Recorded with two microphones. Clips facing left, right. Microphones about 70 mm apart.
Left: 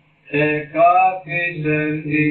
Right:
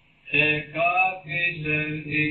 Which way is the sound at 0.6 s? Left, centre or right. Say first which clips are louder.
Left 11 dB; left.